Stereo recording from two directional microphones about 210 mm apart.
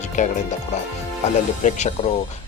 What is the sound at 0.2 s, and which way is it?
Speech, 35° left (ahead or behind).